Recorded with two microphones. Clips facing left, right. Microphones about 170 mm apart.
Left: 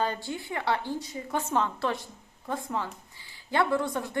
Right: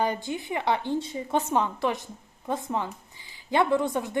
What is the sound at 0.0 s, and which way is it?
A woman's voice, 15° right (ahead or behind).